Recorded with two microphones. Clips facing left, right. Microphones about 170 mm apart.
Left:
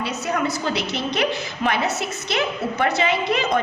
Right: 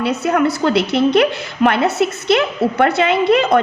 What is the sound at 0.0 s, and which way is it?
A woman's voice, 60° right (ahead or behind).